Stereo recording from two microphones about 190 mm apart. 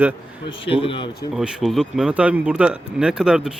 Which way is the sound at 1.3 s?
5° right (ahead or behind).